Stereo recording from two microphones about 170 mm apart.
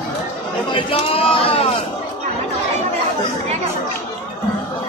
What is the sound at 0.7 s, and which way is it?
Speech, 30° left (ahead or behind).